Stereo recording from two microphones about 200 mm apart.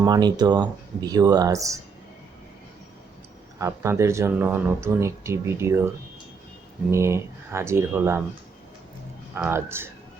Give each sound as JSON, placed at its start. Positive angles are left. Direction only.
{"t": 0.0, "sound": "speech", "side_deg": -20}
{"t": 3.6, "sound": "speech", "side_deg": -15}
{"t": 6.9, "sound": "speech", "side_deg": -15}
{"t": 9.3, "sound": "speech", "side_deg": -10}